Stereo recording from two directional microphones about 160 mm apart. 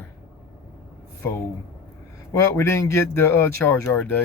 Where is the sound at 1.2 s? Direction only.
15° left (ahead or behind).